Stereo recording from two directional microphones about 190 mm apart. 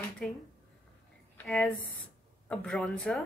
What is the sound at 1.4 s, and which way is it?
Speech, 5° left (ahead or behind).